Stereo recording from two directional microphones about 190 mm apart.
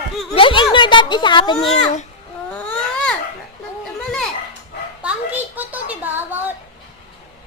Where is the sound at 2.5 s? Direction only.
5° left (ahead or behind).